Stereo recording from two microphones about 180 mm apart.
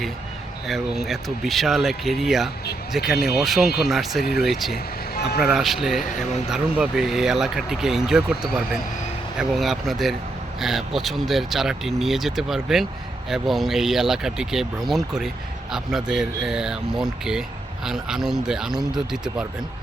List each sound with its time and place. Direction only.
0.7 s speech: centre (ahead or behind)
5.1 s speech: 60° left (ahead or behind)
5.4 s speech: centre (ahead or behind)